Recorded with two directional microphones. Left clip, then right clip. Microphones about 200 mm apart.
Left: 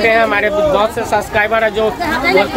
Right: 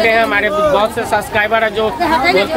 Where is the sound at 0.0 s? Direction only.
Centre (ahead or behind).